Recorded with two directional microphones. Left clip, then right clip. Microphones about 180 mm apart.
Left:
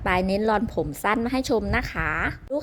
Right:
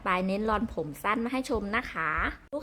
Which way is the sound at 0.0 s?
15° left (ahead or behind).